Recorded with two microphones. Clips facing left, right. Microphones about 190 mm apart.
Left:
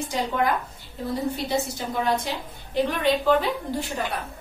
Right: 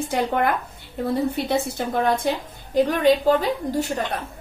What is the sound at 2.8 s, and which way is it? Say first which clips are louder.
Speech: right 5 dB; 40° right (ahead or behind).